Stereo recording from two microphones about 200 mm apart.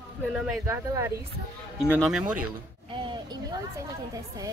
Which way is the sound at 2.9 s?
25° right (ahead or behind).